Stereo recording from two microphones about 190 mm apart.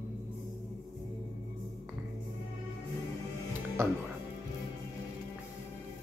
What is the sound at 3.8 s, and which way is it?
Speech, 15° right (ahead or behind).